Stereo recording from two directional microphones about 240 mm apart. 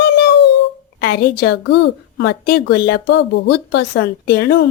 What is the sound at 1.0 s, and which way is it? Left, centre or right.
A woman's voice, left.